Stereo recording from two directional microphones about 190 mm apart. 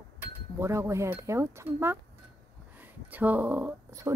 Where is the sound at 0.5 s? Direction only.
15° right (ahead or behind).